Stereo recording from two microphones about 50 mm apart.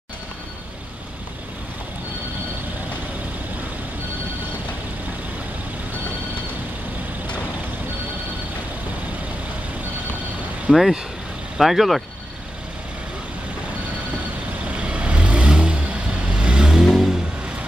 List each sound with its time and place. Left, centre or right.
10.7 s speech: centre
14.8 s vehicle: right
16.8 s vehicle: centre